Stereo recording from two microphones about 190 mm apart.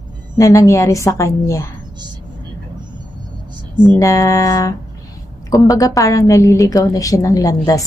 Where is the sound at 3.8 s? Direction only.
15° left (ahead or behind).